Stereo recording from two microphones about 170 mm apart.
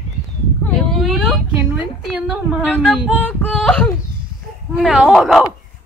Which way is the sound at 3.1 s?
5° left (ahead or behind).